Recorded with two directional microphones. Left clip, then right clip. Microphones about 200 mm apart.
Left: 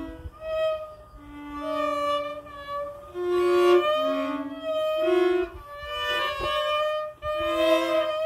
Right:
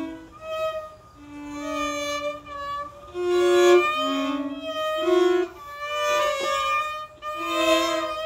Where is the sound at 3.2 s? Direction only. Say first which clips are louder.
Right 3 dB; 20° right (ahead or behind).